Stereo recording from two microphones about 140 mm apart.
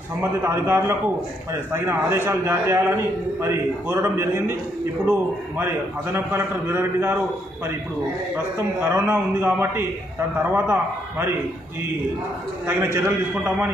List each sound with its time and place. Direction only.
0.2 s a man's voice: 15° right (ahead or behind)
5.6 s a man's voice: 20° right (ahead or behind)
8.8 s a man's voice: 15° right (ahead or behind)
12.6 s a man's voice: 20° right (ahead or behind)